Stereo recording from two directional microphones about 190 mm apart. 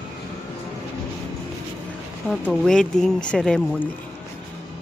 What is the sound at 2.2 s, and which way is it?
Speech, 5° left (ahead or behind).